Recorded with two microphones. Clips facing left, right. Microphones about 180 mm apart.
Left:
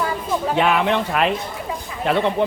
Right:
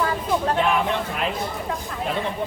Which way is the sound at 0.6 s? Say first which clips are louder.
Left 4 dB; 80° left.